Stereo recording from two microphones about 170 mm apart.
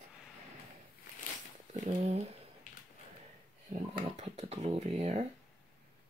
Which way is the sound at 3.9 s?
35° right (ahead or behind).